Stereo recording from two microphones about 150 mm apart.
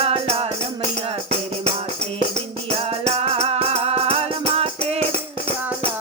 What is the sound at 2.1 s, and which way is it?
Music, 40° right (ahead or behind).